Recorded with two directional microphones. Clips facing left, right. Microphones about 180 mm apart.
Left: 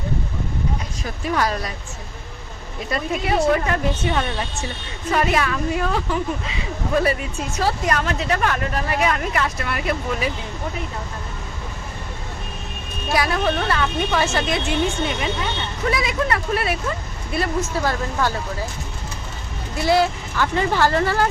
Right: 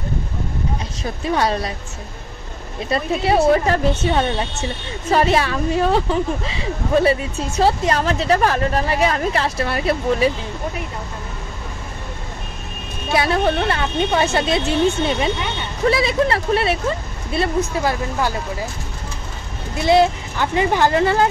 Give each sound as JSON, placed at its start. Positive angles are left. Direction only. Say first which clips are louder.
{"t": 1.2, "sound": "speech", "louder": "right 3 dB", "side_deg": -25}
{"t": 2.9, "sound": "speech", "louder": "right 4 dB", "side_deg": -30}
{"t": 13.1, "sound": "speech", "louder": "right 3 dB", "side_deg": -30}
{"t": 15.9, "sound": "speech", "louder": "right 4 dB", "side_deg": -30}
{"t": 17.6, "sound": "speech", "louder": "right 2 dB", "side_deg": -15}
{"t": 19.8, "sound": "speech", "louder": "right 4 dB", "side_deg": -20}